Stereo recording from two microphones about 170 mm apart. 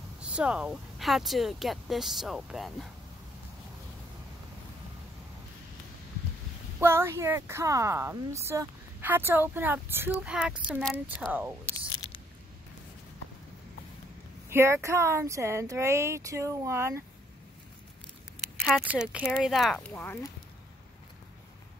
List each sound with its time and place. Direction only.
0.2 s speech: 5° right (ahead or behind)
6.8 s speech: 15° right (ahead or behind); by 11.3 s centre (ahead or behind)
11.9 s a sound: 30° left (ahead or behind)
14.5 s speech: 15° right (ahead or behind)
18.6 s a sound: centre (ahead or behind)
18.9 s speech: 10° right (ahead or behind); by 20.2 s 10° left (ahead or behind)